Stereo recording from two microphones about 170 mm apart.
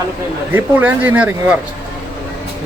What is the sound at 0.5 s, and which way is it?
Speech, 10° right (ahead or behind).